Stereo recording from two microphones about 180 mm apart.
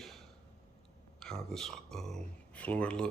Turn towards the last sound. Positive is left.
turn(degrees=5)  # may be behind; listen again after turning